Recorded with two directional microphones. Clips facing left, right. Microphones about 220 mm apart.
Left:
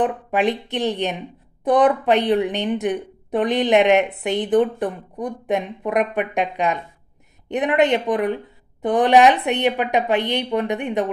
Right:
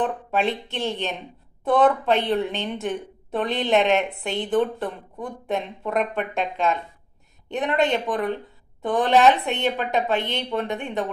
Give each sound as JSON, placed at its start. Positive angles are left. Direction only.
{"t": 0.0, "sound": "a woman's voice", "side_deg": 15}